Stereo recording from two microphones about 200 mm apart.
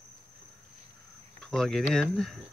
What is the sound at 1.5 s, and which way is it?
Speech, centre (ahead or behind).